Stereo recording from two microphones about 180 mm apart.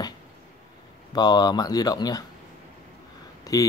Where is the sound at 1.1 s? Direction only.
20° left (ahead or behind).